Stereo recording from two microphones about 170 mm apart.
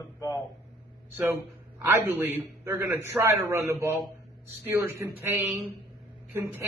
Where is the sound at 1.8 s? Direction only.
10° right (ahead or behind).